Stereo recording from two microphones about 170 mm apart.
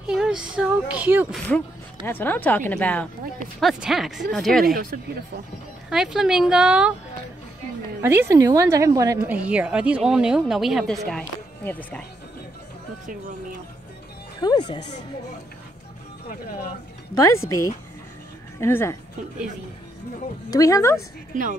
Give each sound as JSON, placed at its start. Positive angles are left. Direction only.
{"t": 0.0, "sound": "speech", "side_deg": -5}
{"t": 2.0, "sound": "speech", "side_deg": 10}
{"t": 3.5, "sound": "speech", "side_deg": -5}
{"t": 5.9, "sound": "speech", "side_deg": -5}
{"t": 8.0, "sound": "a woman's voice", "side_deg": -15}
{"t": 14.4, "sound": "speech", "side_deg": 25}
{"t": 16.3, "sound": "speech", "side_deg": 60}
{"t": 17.1, "sound": "speech", "side_deg": 20}
{"t": 20.5, "sound": "speech", "side_deg": 20}